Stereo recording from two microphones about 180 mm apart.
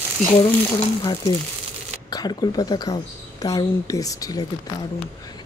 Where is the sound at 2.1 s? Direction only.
20° left (ahead or behind).